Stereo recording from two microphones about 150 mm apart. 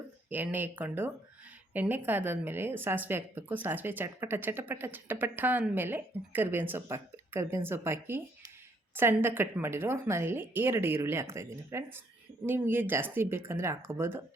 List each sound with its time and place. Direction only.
0.3 s a woman's voice: 10° right (ahead or behind)